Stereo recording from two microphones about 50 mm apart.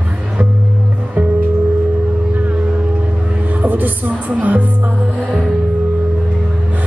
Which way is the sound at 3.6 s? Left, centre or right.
Right.